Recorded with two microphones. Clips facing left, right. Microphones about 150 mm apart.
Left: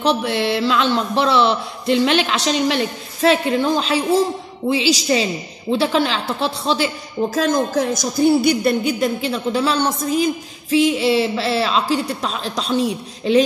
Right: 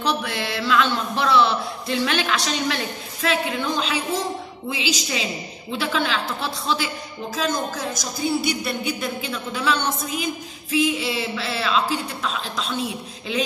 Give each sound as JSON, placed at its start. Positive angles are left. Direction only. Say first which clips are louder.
{"t": 0.0, "sound": "a man's voice", "louder": "left 7 dB", "side_deg": 30}
{"t": 7.3, "sound": "speech", "louder": "left 7 dB", "side_deg": 55}